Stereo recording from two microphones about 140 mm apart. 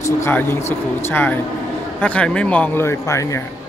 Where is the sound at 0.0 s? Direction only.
15° left (ahead or behind).